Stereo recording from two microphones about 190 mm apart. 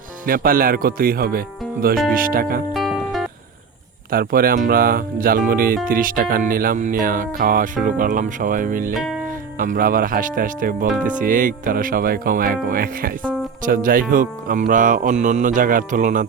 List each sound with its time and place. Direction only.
0.3 s speech: 50° right (ahead or behind)
2.7 s music: centre (ahead or behind)
4.1 s speech: 50° right (ahead or behind)